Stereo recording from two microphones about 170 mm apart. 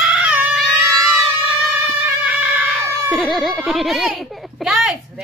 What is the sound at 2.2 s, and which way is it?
Screaming, 5° right (ahead or behind).